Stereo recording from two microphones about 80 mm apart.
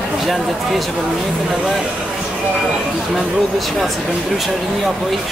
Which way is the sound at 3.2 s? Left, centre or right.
Centre.